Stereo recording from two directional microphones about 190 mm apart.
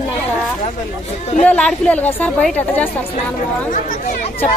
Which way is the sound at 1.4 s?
5° left (ahead or behind).